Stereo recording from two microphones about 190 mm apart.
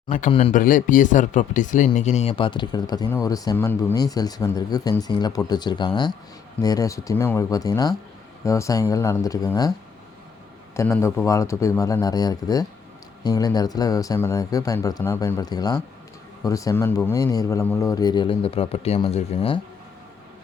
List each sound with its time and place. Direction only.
0.3 s speech: 30° left (ahead or behind)
0.5 s speech: 45° left (ahead or behind); by 9.7 s 20° left (ahead or behind)
10.8 s speech: 15° left (ahead or behind); by 19.5 s 30° left (ahead or behind)